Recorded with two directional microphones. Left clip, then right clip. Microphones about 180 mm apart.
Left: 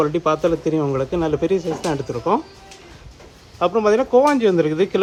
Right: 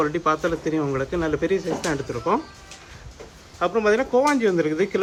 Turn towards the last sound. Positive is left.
turn(degrees=15)  # may be behind; listen again after turning